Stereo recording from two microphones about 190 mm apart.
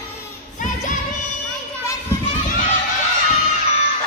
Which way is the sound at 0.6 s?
40° left (ahead or behind).